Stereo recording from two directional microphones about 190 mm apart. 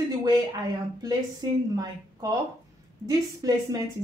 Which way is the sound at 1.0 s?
20° right (ahead or behind).